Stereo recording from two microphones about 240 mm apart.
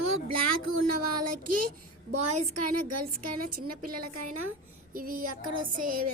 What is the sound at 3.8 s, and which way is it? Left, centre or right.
A woman's voice, right.